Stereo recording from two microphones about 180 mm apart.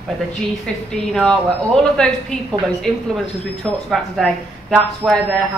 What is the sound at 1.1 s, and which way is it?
A woman's voice, 5° left (ahead or behind).